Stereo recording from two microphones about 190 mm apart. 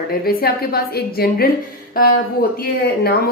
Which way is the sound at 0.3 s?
55° left (ahead or behind).